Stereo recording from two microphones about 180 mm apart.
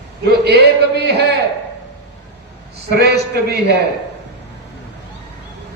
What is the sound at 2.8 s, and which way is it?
Speech, 60° right (ahead or behind).